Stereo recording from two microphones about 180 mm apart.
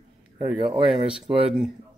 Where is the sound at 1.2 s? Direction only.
30° right (ahead or behind).